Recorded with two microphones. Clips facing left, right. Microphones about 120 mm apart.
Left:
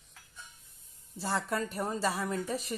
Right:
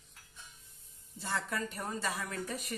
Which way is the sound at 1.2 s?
40° left (ahead or behind).